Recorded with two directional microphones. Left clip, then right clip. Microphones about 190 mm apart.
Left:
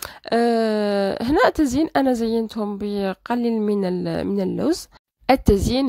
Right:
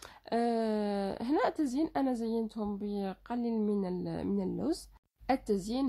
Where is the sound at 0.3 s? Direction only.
35° left (ahead or behind).